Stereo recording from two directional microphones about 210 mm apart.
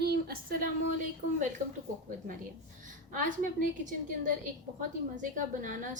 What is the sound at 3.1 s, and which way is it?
Speech, 40° right (ahead or behind).